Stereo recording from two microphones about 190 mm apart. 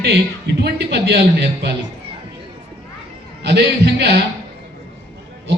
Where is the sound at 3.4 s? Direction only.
60° right (ahead or behind).